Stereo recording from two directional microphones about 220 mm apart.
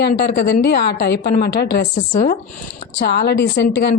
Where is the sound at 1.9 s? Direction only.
40° left (ahead or behind).